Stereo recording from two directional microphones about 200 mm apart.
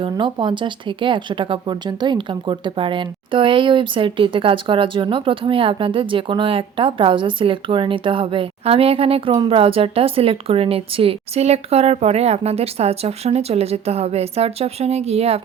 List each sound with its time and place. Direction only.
0.0 s speech: 25° right (ahead or behind)